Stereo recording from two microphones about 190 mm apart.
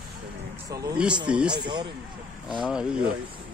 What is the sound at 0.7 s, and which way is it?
Speech, 20° right (ahead or behind).